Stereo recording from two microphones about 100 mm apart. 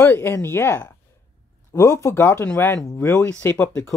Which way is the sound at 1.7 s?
30° left (ahead or behind).